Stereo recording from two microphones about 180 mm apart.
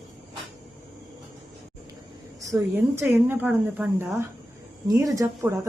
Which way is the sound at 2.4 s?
15° right (ahead or behind).